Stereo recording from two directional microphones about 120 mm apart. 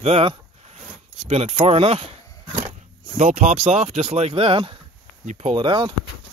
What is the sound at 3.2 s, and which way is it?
Speech, 75° right (ahead or behind).